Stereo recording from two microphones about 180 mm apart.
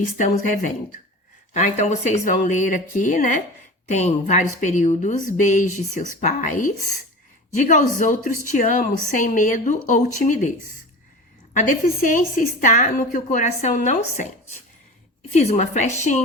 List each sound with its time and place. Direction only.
0.0 s a woman's voice: 45° left (ahead or behind)
11.5 s a woman's voice: 45° left (ahead or behind)